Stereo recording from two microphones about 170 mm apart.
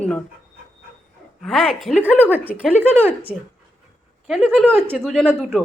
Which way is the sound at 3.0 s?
10° right (ahead or behind).